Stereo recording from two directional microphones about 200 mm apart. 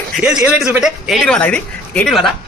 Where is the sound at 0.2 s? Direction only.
5° right (ahead or behind).